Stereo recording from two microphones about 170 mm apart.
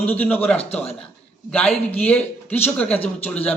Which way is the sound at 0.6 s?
35° left (ahead or behind).